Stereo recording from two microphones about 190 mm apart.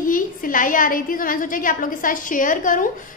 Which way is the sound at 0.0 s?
45° left (ahead or behind).